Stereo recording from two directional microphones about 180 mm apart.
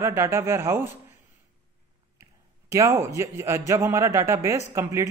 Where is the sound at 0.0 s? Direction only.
15° right (ahead or behind).